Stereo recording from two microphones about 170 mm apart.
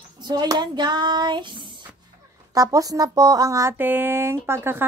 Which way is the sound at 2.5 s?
20° right (ahead or behind).